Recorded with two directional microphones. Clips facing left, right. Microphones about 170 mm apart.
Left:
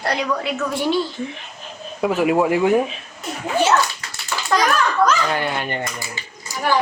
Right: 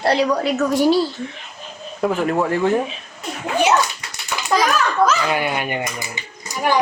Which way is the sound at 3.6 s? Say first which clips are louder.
Right 2 dB; 15° right (ahead or behind).